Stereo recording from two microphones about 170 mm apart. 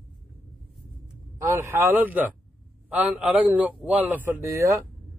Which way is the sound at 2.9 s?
10° right (ahead or behind).